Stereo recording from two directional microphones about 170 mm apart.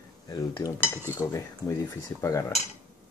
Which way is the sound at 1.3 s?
15° left (ahead or behind).